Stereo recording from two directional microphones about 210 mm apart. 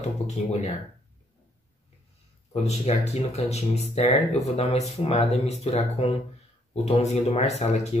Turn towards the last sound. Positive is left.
turn(degrees=30)  # may be behind; listen again after turning